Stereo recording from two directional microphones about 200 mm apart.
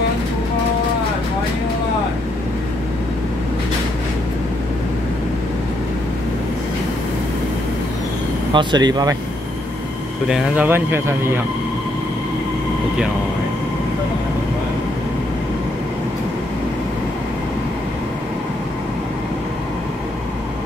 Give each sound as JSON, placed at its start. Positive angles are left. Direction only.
{"t": 8.5, "sound": "speech", "side_deg": -20}
{"t": 10.2, "sound": "speech", "side_deg": 0}